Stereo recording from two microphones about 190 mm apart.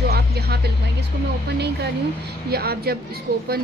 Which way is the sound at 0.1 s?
55° right (ahead or behind).